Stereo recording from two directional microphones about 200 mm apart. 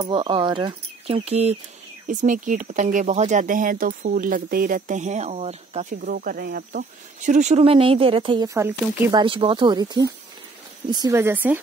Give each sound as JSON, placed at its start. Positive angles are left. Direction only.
{"t": 0.0, "sound": "speech", "side_deg": -20}
{"t": 5.9, "sound": "speech", "side_deg": -45}
{"t": 8.5, "sound": "speech", "side_deg": -10}
{"t": 9.1, "sound": "speech", "side_deg": -25}